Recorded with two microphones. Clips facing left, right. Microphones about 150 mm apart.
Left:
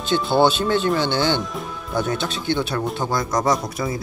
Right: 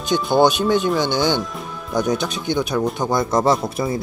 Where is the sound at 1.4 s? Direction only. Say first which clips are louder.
Even; centre (ahead or behind).